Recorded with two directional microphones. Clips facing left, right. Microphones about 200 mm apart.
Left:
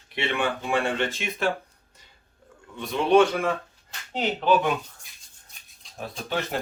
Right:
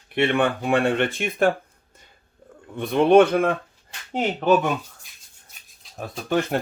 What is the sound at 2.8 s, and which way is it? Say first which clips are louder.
Speech: right 4 dB; 55° right (ahead or behind).